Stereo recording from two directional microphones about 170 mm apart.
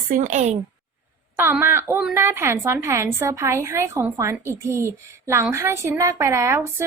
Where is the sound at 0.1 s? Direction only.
45° right (ahead or behind).